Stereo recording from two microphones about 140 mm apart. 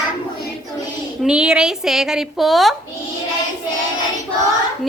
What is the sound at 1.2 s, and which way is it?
Speech, 5° right (ahead or behind).